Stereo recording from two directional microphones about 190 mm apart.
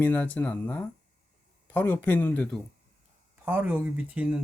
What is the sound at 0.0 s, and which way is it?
Speech, 10° left (ahead or behind).